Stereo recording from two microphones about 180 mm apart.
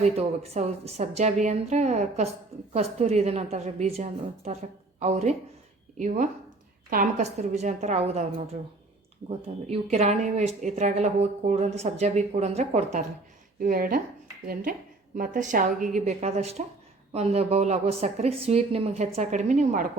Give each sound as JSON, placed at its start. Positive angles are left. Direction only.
{"t": 0.0, "sound": "a woman's voice", "side_deg": -35}
{"t": 6.9, "sound": "a woman's voice", "side_deg": -45}
{"t": 9.6, "sound": "a woman's voice", "side_deg": -35}
{"t": 13.6, "sound": "a woman's voice", "side_deg": -50}